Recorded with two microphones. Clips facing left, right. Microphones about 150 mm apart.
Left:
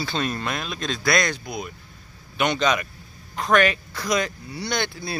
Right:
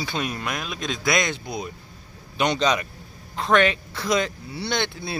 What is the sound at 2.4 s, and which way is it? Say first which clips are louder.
A man's voice: even; 30° right (ahead or behind).